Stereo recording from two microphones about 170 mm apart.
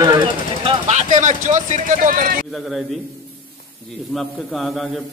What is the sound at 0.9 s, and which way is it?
A man's voice, 45° right (ahead or behind).